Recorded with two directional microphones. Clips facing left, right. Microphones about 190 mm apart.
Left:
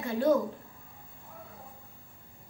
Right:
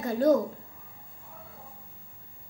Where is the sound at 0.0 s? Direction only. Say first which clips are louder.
Right 3 dB; 40° right (ahead or behind).